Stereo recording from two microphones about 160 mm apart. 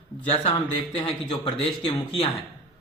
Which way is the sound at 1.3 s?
25° left (ahead or behind).